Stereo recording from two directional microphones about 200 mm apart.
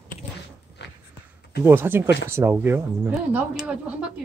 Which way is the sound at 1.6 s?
10° right (ahead or behind).